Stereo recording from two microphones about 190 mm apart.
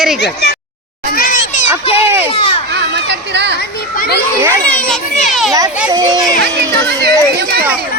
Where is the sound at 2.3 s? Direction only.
30° left (ahead or behind).